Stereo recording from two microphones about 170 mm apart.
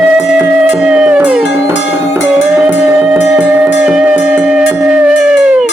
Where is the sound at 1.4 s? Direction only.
90° left.